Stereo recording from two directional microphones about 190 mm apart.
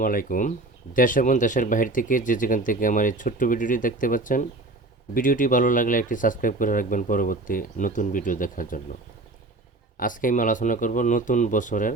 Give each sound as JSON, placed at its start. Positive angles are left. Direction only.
{"t": 0.0, "sound": "speech", "side_deg": 45}
{"t": 10.0, "sound": "speech", "side_deg": 45}